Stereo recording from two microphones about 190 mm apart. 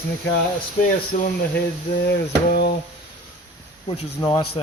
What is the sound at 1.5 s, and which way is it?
Speech, 60° left (ahead or behind).